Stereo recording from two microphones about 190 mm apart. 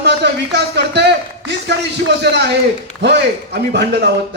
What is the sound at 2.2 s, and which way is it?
A man's voice, 60° right (ahead or behind).